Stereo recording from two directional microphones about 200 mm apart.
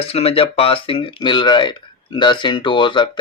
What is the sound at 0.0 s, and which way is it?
Speech, 30° left (ahead or behind).